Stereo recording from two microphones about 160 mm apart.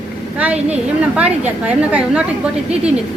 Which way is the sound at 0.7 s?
5° right (ahead or behind).